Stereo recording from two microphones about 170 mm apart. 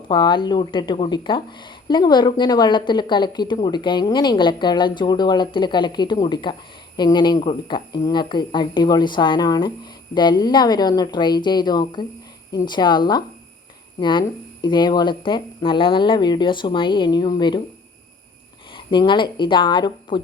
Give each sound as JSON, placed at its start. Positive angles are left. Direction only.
{"t": 0.1, "sound": "a woman's voice", "side_deg": 30}
{"t": 18.7, "sound": "speech", "side_deg": 30}